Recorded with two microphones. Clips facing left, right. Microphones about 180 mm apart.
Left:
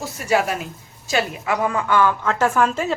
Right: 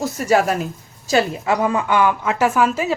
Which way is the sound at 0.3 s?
40° right (ahead or behind).